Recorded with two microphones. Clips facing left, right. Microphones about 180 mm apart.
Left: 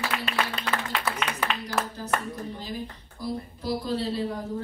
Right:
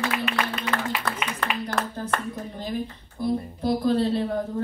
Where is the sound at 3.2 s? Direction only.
55° right (ahead or behind).